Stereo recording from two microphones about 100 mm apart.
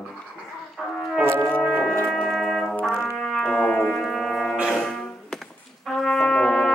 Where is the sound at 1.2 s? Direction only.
25° right (ahead or behind).